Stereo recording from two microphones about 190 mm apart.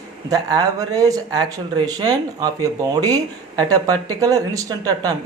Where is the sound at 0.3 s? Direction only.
20° right (ahead or behind).